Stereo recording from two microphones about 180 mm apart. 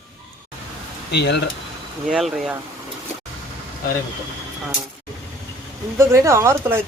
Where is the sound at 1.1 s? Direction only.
70° left (ahead or behind).